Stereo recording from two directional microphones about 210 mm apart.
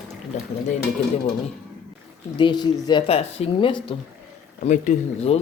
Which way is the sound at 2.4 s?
20° left (ahead or behind).